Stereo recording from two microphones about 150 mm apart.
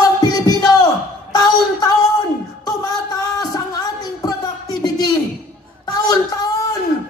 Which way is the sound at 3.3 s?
25° left (ahead or behind).